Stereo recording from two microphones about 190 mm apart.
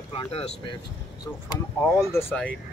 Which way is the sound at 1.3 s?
15° left (ahead or behind).